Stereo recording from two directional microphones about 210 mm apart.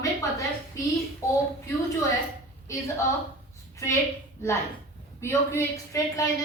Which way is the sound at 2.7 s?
15° left (ahead or behind).